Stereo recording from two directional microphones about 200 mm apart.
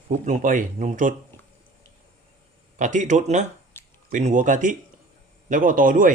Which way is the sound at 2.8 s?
40° right (ahead or behind).